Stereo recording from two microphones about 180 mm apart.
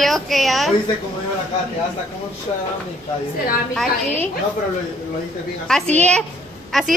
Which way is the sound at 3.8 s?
10° left (ahead or behind).